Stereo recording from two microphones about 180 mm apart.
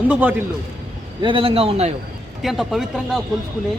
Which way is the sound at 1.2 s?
30° right (ahead or behind).